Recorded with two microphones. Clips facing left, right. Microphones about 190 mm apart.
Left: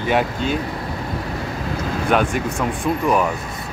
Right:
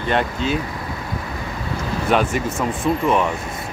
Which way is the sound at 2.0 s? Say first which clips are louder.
Even; centre (ahead or behind).